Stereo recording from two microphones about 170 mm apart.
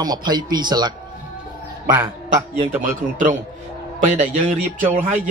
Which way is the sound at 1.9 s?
15° right (ahead or behind).